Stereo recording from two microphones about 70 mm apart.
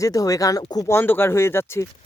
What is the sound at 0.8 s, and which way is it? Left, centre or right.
Speech, left.